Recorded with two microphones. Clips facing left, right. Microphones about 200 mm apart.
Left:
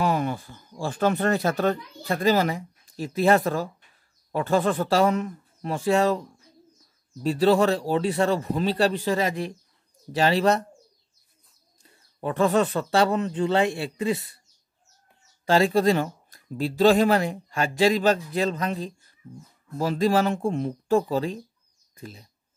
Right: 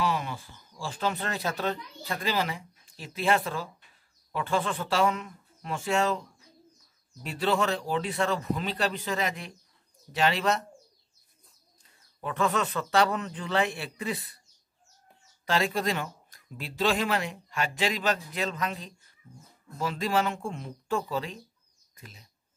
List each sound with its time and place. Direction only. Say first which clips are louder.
0.0 s speech: left 5 dB; 50° left (ahead or behind)
7.2 s speech: left 8 dB; 35° left (ahead or behind)
11.8 s speech: left 7 dB; 35° left (ahead or behind)
15.4 s speech: left 8 dB; 30° left (ahead or behind)